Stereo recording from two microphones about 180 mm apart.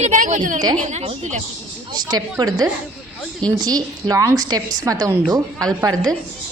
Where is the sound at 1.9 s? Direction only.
25° right (ahead or behind).